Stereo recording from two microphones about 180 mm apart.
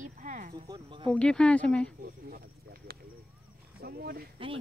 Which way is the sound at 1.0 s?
5° left (ahead or behind).